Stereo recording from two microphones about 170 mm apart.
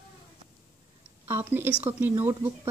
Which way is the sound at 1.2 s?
10° right (ahead or behind).